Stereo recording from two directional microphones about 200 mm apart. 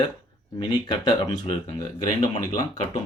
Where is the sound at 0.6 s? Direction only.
20° left (ahead or behind).